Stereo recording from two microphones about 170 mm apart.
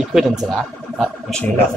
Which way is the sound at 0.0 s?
5° right (ahead or behind).